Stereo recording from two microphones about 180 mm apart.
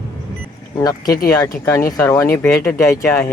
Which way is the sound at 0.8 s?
20° left (ahead or behind).